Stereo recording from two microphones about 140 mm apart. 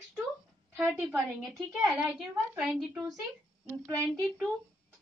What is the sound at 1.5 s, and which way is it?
A woman's voice, centre (ahead or behind).